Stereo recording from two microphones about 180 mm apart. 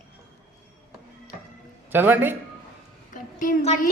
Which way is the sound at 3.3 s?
40° left (ahead or behind).